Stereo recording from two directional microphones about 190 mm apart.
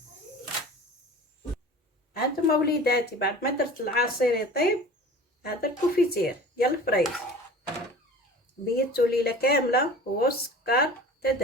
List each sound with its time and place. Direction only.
2.1 s speech: 55° left (ahead or behind)
8.6 s speech: 55° left (ahead or behind)